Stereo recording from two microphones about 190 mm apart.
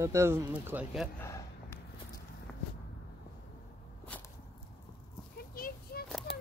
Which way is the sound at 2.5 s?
Centre (ahead or behind).